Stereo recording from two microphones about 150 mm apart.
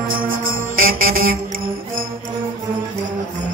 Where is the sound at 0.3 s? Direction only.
70° right (ahead or behind).